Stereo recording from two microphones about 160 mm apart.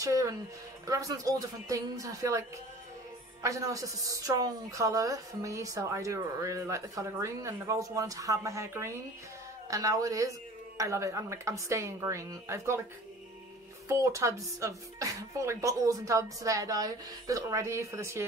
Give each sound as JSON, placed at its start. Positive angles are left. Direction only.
{"t": 0.0, "sound": "speech", "side_deg": -20}
{"t": 3.4, "sound": "speech", "side_deg": -20}
{"t": 13.8, "sound": "speech", "side_deg": -20}